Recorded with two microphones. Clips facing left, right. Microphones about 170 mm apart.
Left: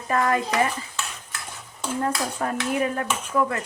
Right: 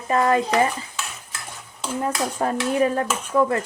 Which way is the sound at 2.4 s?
35° right (ahead or behind).